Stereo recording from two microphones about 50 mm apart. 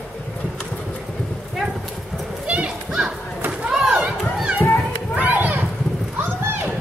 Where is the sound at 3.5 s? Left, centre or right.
Right.